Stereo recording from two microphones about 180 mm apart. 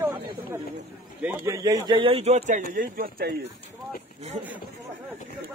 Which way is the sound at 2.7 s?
55° right (ahead or behind).